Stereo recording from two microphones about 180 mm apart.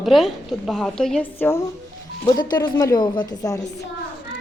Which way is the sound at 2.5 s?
25° left (ahead or behind).